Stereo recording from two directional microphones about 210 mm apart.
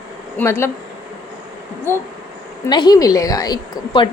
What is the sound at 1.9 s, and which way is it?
A woman's voice, 10° left (ahead or behind).